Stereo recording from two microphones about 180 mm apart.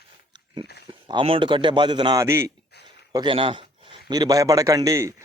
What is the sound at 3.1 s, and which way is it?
A man's voice, 30° right (ahead or behind).